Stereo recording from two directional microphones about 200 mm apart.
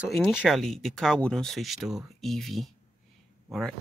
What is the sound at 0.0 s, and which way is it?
Speech, centre (ahead or behind).